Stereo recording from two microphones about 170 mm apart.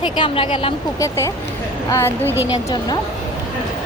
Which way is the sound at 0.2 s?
30° left (ahead or behind).